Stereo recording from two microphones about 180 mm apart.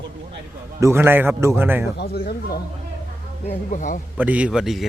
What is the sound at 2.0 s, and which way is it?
Speech, 60° left (ahead or behind).